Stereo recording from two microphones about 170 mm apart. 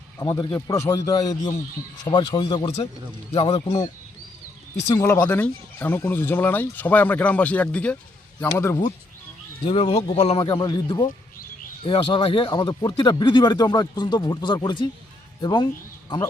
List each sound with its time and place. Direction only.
0.2 s speech: 25° left (ahead or behind)
4.9 s speech: 15° left (ahead or behind)
9.6 s speech: 35° left (ahead or behind)
10.4 s speech: 25° left (ahead or behind)